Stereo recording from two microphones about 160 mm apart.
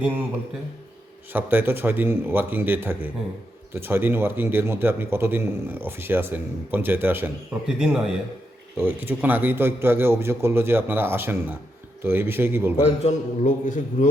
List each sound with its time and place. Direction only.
1.3 s a man's voice: 15° right (ahead or behind)
12.8 s a man's voice: 45° left (ahead or behind)